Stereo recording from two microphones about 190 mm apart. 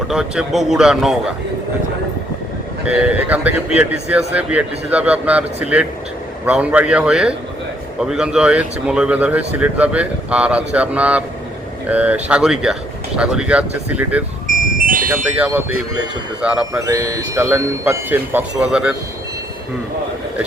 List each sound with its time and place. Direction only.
0.1 s speech: 5° right (ahead or behind)
2.8 s speech: 5° right (ahead or behind)
14.8 s music: 45° right (ahead or behind)
15.1 s speech: 10° right (ahead or behind)
16.8 s speech: 15° right (ahead or behind)